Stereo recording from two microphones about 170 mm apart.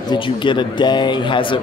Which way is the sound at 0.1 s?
30° left (ahead or behind).